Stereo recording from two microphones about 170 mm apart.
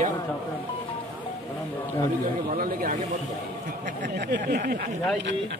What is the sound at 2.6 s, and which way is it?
Speech, 55° right (ahead or behind).